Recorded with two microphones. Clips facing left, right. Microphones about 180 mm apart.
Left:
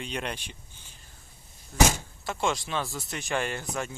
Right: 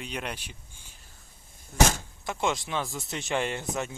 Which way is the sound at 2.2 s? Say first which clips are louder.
Even; 20° right (ahead or behind).